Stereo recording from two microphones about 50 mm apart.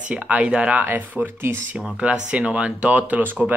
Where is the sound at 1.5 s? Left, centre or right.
Right.